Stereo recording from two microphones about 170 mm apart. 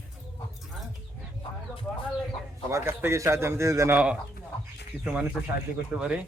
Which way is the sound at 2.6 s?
15° right (ahead or behind).